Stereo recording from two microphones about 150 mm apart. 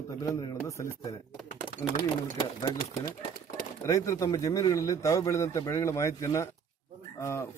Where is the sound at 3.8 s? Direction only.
20° left (ahead or behind).